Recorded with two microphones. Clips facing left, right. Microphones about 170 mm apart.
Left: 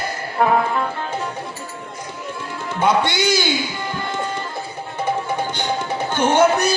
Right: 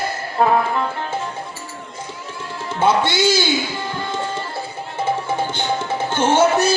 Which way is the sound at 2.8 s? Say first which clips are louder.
Right 1 dB; 25° right (ahead or behind).